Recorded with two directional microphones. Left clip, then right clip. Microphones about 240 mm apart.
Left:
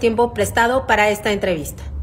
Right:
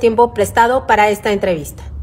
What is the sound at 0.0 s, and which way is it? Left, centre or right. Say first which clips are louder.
A woman's voice: right 5 dB; right.